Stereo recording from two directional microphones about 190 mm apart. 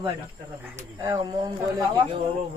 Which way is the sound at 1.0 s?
20° right (ahead or behind).